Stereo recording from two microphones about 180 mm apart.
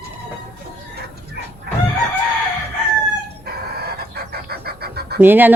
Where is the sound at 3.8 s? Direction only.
60° right (ahead or behind).